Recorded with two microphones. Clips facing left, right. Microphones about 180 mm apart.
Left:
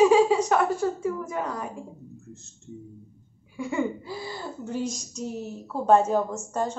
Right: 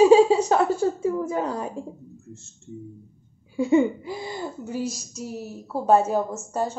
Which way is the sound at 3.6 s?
20° right (ahead or behind).